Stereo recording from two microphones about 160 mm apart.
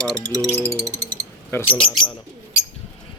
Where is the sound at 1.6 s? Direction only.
35° left (ahead or behind).